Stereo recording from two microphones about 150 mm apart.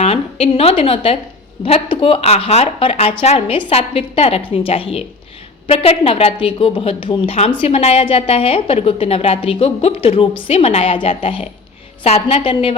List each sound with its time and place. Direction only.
0.0 s a woman's voice: 40° left (ahead or behind)